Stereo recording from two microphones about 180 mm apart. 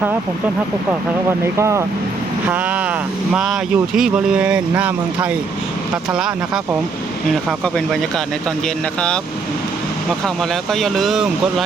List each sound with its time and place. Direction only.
1.5 s speech: 15° right (ahead or behind)
8.6 s speech: 5° left (ahead or behind)
10.2 s speech: centre (ahead or behind)